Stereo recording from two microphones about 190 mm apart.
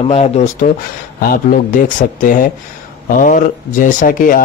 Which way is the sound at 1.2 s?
50° left (ahead or behind).